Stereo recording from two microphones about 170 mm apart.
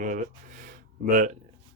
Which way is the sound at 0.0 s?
50° right (ahead or behind).